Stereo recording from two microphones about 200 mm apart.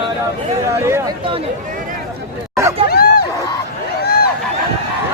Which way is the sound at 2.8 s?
50° left (ahead or behind).